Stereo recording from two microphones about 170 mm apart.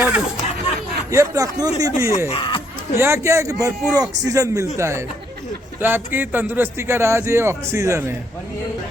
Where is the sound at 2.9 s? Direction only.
15° right (ahead or behind).